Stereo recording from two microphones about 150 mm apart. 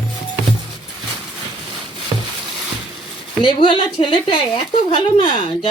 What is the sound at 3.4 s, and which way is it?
A woman's voice, 30° left (ahead or behind).